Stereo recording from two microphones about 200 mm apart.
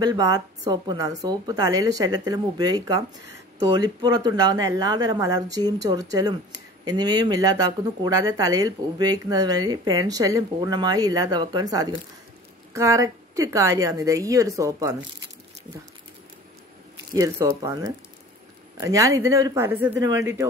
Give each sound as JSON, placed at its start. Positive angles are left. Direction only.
{"t": 0.0, "sound": "a woman's voice", "side_deg": -20}
{"t": 17.1, "sound": "a woman's voice", "side_deg": -15}